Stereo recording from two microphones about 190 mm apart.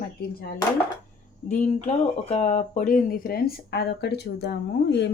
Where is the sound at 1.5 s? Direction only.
35° left (ahead or behind).